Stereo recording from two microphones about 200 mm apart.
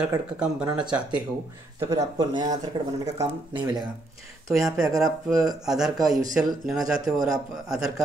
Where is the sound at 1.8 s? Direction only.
15° right (ahead or behind).